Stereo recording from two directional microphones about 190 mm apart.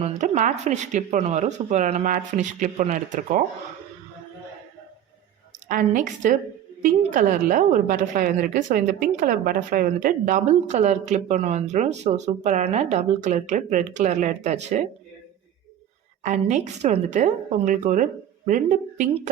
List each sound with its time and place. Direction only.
0.0 s a woman's voice: 40° right (ahead or behind)
5.6 s a woman's voice: 45° right (ahead or behind)
16.2 s a woman's voice: 40° right (ahead or behind)